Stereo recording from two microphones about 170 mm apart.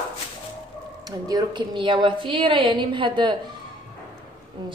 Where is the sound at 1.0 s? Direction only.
25° right (ahead or behind).